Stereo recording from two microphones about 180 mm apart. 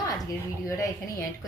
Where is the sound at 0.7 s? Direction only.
15° left (ahead or behind).